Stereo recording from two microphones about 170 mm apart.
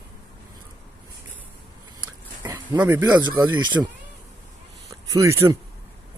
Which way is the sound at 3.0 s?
25° right (ahead or behind).